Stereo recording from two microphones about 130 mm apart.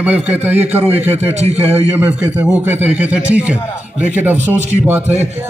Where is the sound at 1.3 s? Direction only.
55° right (ahead or behind).